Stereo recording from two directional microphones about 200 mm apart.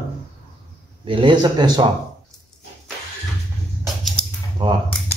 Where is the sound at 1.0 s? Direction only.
25° right (ahead or behind).